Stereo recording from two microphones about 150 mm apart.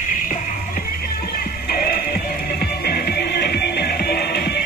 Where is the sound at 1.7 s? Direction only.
85° left.